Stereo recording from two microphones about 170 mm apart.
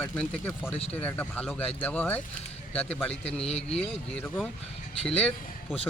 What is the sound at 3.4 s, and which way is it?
Speech, 35° left (ahead or behind).